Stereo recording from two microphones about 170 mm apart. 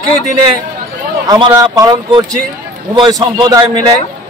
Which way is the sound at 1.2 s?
25° right (ahead or behind).